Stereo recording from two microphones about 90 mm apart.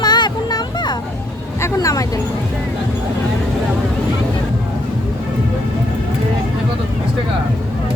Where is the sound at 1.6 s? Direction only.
40° left (ahead or behind).